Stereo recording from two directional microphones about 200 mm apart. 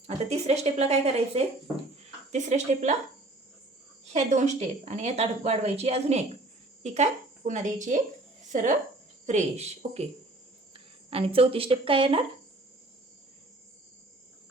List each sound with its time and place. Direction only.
0.3 s a woman's voice: 30° right (ahead or behind)
4.1 s a woman's voice: 35° right (ahead or behind)
9.2 s a woman's voice: 35° right (ahead or behind)
11.1 s a woman's voice: 30° right (ahead or behind)